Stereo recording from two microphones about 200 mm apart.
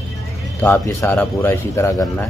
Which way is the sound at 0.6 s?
10° left (ahead or behind).